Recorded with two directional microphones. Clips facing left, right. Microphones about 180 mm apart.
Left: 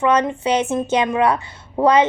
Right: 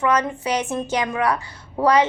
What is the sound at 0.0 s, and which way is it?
A woman's voice, 25° left (ahead or behind).